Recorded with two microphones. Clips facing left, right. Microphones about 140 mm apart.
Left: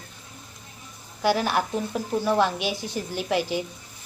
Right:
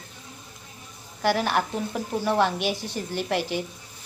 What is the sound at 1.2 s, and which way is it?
Speech, 5° left (ahead or behind).